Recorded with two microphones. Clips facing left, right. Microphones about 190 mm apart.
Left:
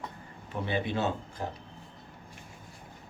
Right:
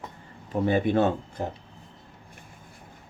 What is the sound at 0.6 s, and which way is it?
Speech, 50° right (ahead or behind).